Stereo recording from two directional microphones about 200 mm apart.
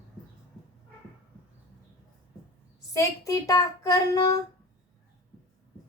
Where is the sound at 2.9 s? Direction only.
15° left (ahead or behind).